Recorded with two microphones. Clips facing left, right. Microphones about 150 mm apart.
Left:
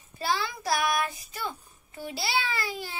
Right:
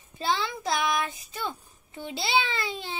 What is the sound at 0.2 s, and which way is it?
Child singing, 25° right (ahead or behind).